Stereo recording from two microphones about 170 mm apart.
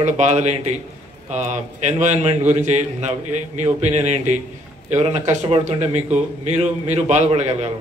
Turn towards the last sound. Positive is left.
turn(degrees=-40)  # may be behind; listen again after turning